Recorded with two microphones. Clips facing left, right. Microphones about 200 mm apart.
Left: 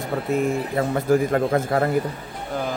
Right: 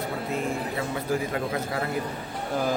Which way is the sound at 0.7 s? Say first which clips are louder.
Left 12 dB; 50° left (ahead or behind).